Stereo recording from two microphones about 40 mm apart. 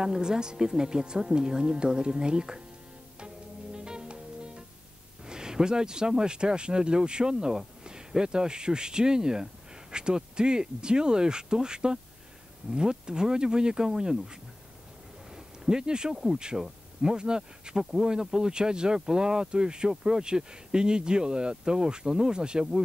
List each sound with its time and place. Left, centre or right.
0.0 s speech: centre
3.7 s music: right
5.2 s speech: centre
15.3 s a sound: centre
16.3 s speech: centre